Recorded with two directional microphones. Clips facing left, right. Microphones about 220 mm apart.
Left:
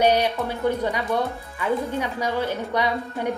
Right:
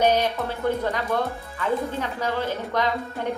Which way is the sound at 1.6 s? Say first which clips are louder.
Left 1 dB; 15° left (ahead or behind).